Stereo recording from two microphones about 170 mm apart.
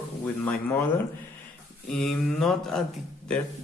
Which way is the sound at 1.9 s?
5° left (ahead or behind).